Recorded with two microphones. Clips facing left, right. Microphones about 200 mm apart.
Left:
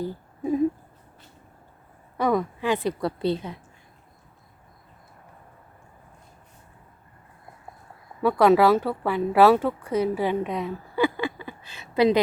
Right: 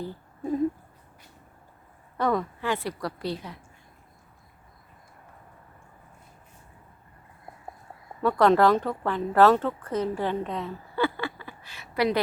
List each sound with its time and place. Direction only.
0.0 s a sound: 10° left (ahead or behind)
2.1 s a woman's voice: 10° left (ahead or behind)
8.2 s a woman's voice: 10° left (ahead or behind)